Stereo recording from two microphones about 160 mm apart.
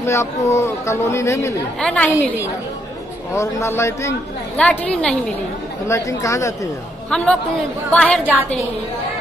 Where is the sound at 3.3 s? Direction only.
15° left (ahead or behind).